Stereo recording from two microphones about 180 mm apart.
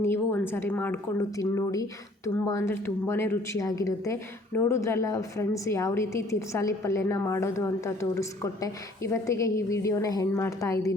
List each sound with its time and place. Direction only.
0.0 s a woman's voice: 10° left (ahead or behind)